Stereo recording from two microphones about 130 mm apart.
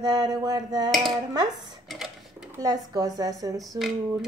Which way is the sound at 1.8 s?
Centre (ahead or behind).